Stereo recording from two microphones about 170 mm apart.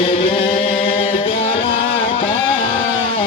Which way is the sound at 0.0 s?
30° left (ahead or behind).